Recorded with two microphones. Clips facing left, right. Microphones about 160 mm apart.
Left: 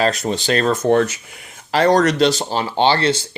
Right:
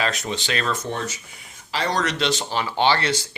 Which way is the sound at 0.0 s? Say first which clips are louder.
Left 7 dB; 40° left (ahead or behind).